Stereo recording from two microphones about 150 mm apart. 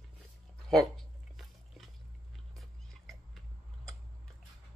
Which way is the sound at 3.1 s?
Centre (ahead or behind).